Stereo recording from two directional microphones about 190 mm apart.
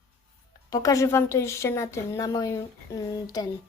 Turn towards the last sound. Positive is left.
turn(degrees=20)  # may be behind; listen again after turning